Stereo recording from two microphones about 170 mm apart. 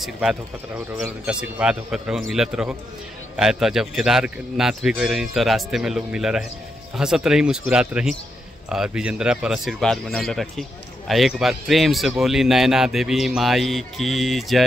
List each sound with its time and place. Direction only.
0.0 s speech: 5° right (ahead or behind)